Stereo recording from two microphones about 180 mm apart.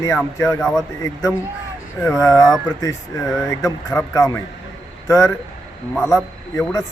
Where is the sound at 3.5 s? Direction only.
15° left (ahead or behind).